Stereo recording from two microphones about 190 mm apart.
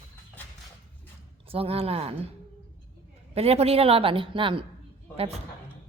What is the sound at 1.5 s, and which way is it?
Speech, 30° right (ahead or behind).